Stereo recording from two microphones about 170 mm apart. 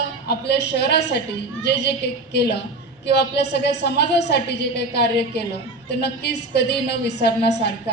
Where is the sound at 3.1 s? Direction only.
80° left.